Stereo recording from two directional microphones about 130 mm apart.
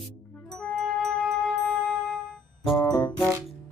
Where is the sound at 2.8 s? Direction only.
30° left (ahead or behind).